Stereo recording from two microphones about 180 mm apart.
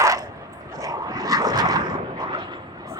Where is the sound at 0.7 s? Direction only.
20° right (ahead or behind).